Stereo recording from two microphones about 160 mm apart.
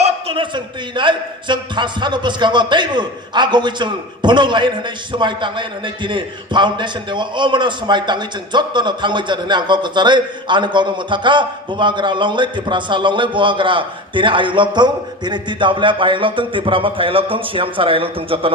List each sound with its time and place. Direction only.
0.0 s a man's voice: 35° right (ahead or behind)